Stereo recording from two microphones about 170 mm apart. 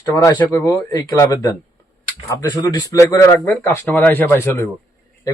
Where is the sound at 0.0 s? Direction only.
15° left (ahead or behind).